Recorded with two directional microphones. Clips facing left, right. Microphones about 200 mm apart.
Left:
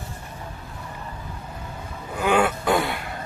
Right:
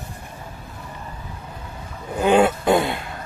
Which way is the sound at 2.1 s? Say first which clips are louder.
Right 5 dB; 25° right (ahead or behind).